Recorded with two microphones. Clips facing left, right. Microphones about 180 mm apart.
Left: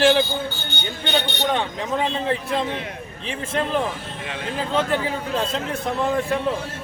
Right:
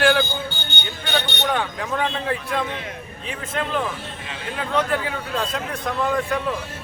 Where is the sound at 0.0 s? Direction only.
25° left (ahead or behind).